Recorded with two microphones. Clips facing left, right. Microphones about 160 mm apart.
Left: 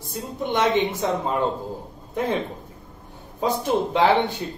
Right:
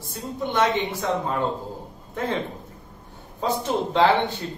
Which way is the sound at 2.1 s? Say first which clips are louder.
Left 3 dB; 15° left (ahead or behind).